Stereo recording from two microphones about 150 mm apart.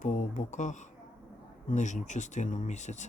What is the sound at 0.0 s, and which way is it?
Speech, 60° left (ahead or behind).